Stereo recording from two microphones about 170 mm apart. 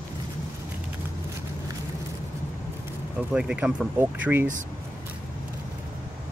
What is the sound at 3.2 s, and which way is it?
Speech, 5° right (ahead or behind).